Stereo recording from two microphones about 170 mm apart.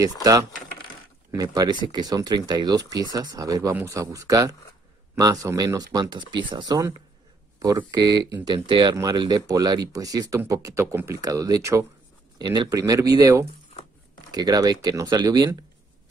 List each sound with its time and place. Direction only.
0.0 s speech: 20° right (ahead or behind)